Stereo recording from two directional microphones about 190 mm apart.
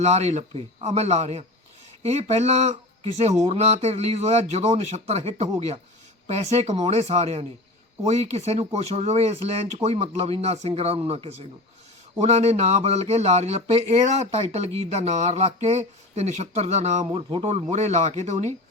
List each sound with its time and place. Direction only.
0.0 s speech: 35° right (ahead or behind)